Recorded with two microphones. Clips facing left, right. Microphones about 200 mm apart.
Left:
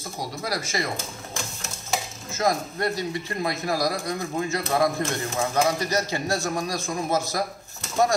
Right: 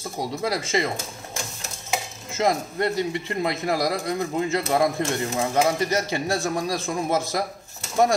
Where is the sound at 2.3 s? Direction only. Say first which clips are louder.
Right 2 dB; 25° right (ahead or behind).